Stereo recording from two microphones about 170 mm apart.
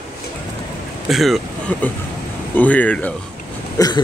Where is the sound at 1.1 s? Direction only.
Centre (ahead or behind).